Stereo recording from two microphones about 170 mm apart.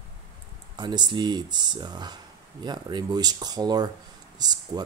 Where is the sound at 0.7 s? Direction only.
25° right (ahead or behind).